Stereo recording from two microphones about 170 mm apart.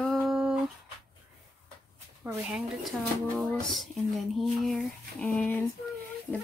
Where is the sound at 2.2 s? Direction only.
5° right (ahead or behind).